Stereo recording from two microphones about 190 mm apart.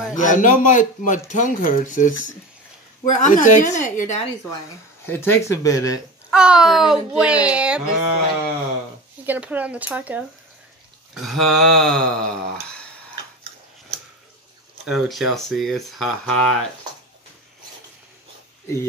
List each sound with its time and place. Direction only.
0.1 s a man's voice: 40° left (ahead or behind)
5.0 s speech: 10° left (ahead or behind)
6.3 s speech: 5° right (ahead or behind)
9.2 s speech: 10° right (ahead or behind)
14.9 s speech: centre (ahead or behind)